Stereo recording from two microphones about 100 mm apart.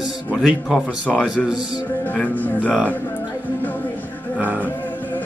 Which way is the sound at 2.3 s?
15° left (ahead or behind).